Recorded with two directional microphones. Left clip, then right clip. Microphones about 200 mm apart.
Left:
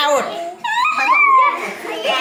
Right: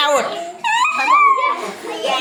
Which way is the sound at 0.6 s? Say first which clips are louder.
Right 1 dB; 55° right (ahead or behind).